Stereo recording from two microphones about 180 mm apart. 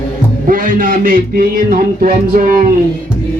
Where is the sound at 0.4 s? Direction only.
50° right (ahead or behind).